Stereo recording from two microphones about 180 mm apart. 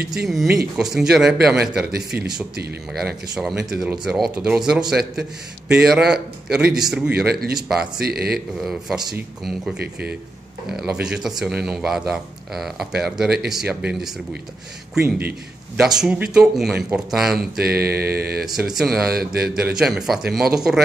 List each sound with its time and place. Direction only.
0.1 s speech: centre (ahead or behind)
1.8 s mantra: 60° right (ahead or behind)
3.0 s speech: centre (ahead or behind)
7.2 s mantra: 60° right (ahead or behind)
7.5 s speech: centre (ahead or behind)
8.0 s mantra: 60° right (ahead or behind)
8.5 s speech: centre (ahead or behind)
10.7 s speech: 5° right (ahead or behind)
15.0 s a man's voice: 10° right (ahead or behind)
17.4 s mantra: 60° right (ahead or behind)
18.7 s speech: centre (ahead or behind)
19.0 s mantra: 60° right (ahead or behind)
19.7 s speech: centre (ahead or behind)